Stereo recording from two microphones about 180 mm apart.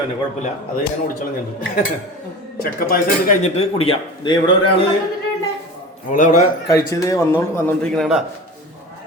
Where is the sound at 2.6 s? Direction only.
50° left (ahead or behind); by 4.7 s 25° left (ahead or behind).